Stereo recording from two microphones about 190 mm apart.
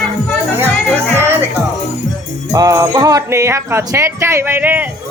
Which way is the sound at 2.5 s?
15° right (ahead or behind).